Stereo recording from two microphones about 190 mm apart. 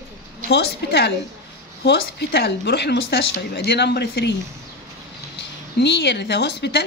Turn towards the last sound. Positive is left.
turn(degrees=60)  # may be behind; listen again after turning